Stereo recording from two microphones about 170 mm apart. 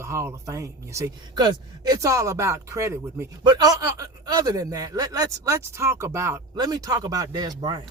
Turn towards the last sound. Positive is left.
turn(degrees=-25)  # may be behind; listen again after turning